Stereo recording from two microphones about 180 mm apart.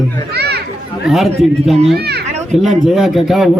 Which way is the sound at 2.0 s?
65° right (ahead or behind).